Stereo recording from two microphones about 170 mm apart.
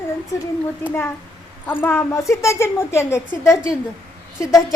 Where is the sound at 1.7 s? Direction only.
15° left (ahead or behind).